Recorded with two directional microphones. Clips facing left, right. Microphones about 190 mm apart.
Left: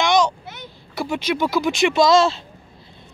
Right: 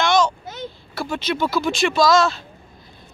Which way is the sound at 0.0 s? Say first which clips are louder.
Even; 15° left (ahead or behind).